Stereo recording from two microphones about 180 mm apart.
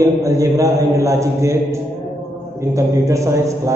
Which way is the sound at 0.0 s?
15° right (ahead or behind).